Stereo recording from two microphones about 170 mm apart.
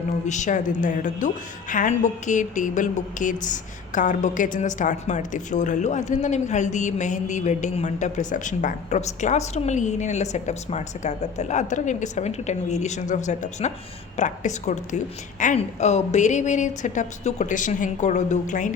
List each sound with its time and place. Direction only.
0.3 s speech: 45° left (ahead or behind)